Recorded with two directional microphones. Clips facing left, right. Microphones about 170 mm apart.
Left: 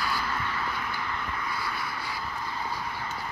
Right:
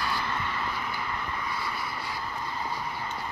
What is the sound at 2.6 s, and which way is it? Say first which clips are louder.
Vehicle: even; centre (ahead or behind).